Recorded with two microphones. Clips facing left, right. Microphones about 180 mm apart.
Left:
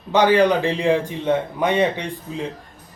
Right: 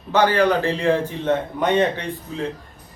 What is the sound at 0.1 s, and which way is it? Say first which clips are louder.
A man's voice: left 2 dB; 15° left (ahead or behind).